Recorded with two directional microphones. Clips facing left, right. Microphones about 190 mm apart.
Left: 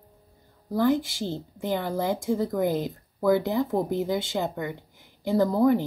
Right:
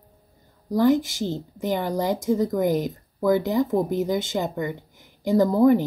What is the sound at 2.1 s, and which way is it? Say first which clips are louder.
Speech: right 4 dB; 40° right (ahead or behind).